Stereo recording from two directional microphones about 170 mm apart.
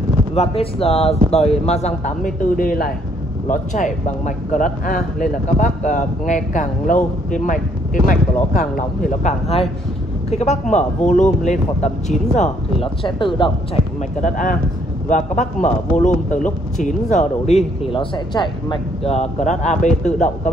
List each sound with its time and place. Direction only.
0.3 s a man's voice: 35° left (ahead or behind); by 9.3 s 50° left (ahead or behind)
10.3 s a man's voice: 40° left (ahead or behind)
14.2 s a man's voice: 50° left (ahead or behind)